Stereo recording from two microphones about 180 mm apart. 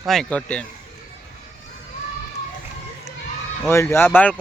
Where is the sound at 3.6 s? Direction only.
15° left (ahead or behind).